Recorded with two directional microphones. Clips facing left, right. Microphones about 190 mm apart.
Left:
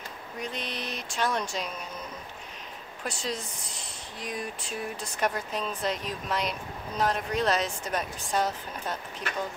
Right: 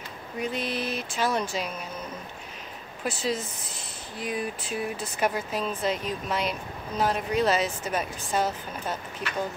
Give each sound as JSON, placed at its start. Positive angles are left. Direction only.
{"t": 0.4, "sound": "speech", "side_deg": -5}
{"t": 3.0, "sound": "speech", "side_deg": -5}